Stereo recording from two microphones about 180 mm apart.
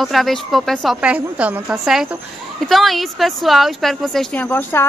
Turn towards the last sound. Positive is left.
turn(degrees=10)  # may be behind; listen again after turning